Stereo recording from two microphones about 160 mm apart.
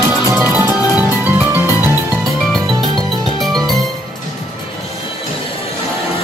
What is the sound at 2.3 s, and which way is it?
Music, centre (ahead or behind).